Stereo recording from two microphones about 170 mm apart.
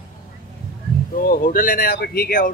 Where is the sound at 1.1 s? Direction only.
55° left (ahead or behind).